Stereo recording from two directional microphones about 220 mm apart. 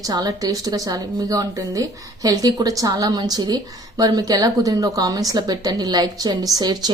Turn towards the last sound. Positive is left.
turn(degrees=-20)  # may be behind; listen again after turning